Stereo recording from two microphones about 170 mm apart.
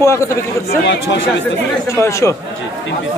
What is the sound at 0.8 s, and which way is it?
Speech, 90° left.